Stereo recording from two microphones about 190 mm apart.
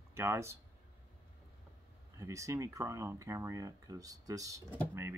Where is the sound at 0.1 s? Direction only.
15° right (ahead or behind).